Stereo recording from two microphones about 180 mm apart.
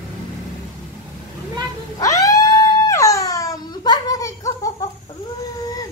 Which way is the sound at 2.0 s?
20° left (ahead or behind).